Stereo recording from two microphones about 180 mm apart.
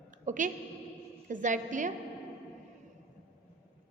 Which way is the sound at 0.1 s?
45° right (ahead or behind).